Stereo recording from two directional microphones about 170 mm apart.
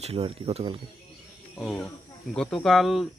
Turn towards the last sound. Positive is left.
turn(degrees=0)  # may be behind; listen again after turning